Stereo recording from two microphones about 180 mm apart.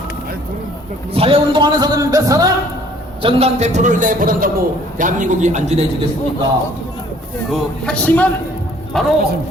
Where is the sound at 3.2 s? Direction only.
35° right (ahead or behind).